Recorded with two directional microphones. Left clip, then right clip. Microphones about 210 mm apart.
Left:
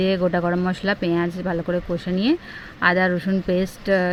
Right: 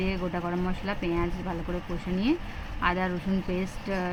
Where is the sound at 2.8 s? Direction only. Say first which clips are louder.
Left 9 dB; 30° left (ahead or behind).